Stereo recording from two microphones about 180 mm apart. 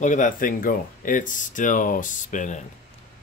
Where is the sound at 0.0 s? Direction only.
45° left (ahead or behind).